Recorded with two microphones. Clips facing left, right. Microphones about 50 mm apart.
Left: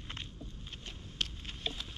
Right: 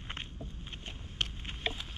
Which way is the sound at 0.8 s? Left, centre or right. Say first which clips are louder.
Right 2 dB; right.